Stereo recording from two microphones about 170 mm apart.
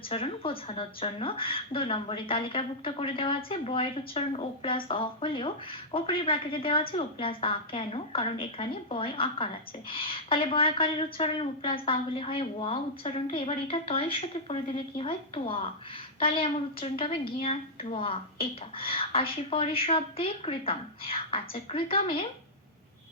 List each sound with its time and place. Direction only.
0.1 s a woman's voice: 30° left (ahead or behind)